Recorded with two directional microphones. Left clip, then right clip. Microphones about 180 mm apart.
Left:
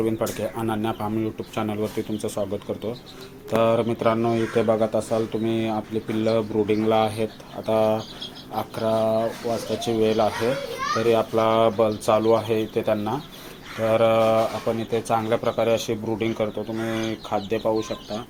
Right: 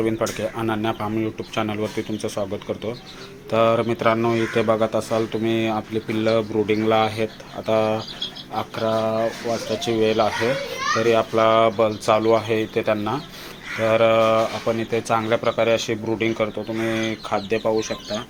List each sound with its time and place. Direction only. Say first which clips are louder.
0.0 s speech: right 2 dB; 5° left (ahead or behind)